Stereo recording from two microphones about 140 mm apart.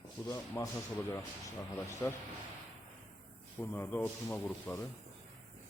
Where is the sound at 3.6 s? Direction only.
15° left (ahead or behind).